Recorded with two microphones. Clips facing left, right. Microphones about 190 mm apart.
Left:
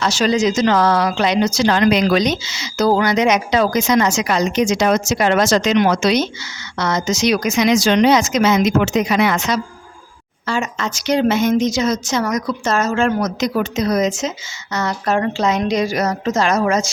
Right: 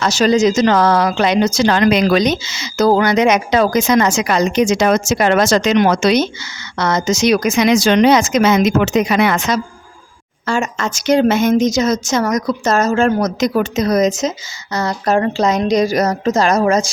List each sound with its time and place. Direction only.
0.0 s a woman's voice: 45° right (ahead or behind)